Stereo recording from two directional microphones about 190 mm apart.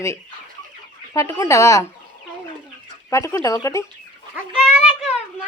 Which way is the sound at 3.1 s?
15° left (ahead or behind).